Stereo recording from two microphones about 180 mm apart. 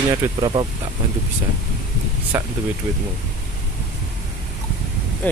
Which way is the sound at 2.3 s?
10° right (ahead or behind).